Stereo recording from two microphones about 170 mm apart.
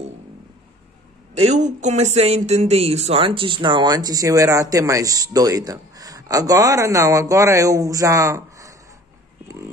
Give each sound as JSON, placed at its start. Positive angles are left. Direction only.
{"t": 1.3, "sound": "speech", "side_deg": -40}